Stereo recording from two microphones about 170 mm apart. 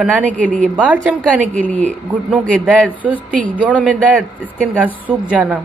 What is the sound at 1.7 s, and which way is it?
Speech, 45° right (ahead or behind).